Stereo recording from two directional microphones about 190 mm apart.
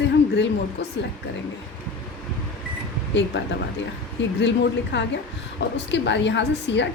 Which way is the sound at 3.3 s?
70° left (ahead or behind).